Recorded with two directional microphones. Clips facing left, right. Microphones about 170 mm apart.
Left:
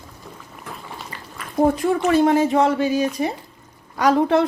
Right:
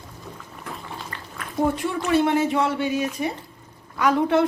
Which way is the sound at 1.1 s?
5° left (ahead or behind).